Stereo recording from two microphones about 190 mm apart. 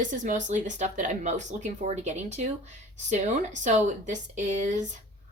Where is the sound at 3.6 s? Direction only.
40° right (ahead or behind).